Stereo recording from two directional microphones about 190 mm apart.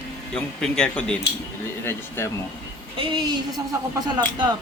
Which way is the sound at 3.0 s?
25° right (ahead or behind).